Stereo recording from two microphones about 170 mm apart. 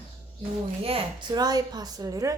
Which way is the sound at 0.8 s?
30° right (ahead or behind).